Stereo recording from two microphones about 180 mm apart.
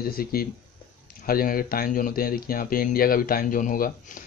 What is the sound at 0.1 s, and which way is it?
Speech, 55° left (ahead or behind).